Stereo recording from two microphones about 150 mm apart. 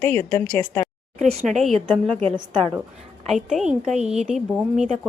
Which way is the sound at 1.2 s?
50° right (ahead or behind).